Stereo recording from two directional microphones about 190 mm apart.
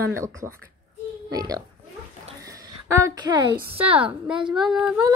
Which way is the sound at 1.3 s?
20° right (ahead or behind).